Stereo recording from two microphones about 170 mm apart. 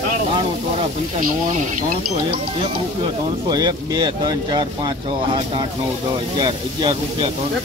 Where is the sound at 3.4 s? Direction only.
25° right (ahead or behind).